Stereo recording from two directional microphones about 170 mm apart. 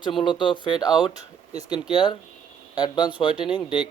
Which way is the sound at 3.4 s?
5° right (ahead or behind).